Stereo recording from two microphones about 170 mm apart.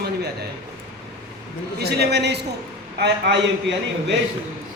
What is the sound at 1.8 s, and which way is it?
Speech, 70° right (ahead or behind).